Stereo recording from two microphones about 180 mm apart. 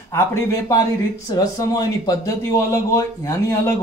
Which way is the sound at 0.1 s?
15° left (ahead or behind).